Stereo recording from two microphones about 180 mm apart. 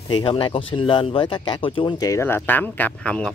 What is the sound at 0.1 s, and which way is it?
Speech, 30° left (ahead or behind).